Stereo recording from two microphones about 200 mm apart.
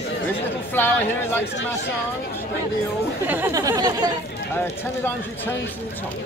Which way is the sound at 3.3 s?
10° right (ahead or behind).